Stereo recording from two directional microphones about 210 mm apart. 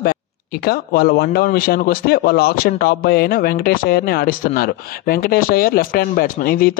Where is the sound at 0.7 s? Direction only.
50° left (ahead or behind).